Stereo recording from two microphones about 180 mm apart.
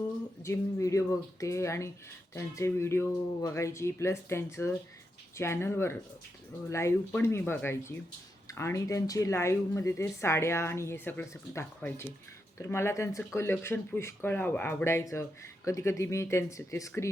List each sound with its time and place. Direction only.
0.4 s speech: 15° left (ahead or behind)